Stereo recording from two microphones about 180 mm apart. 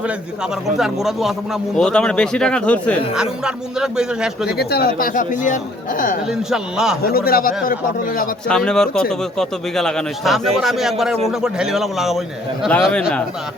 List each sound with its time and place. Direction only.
0.8 s speech: centre (ahead or behind)
3.2 s speech: 5° right (ahead or behind)
4.4 s a man's voice: 60° left (ahead or behind)
6.2 s speech: 5° right (ahead or behind)
7.0 s a man's voice: 55° left (ahead or behind)
8.4 s speech: 5° left (ahead or behind)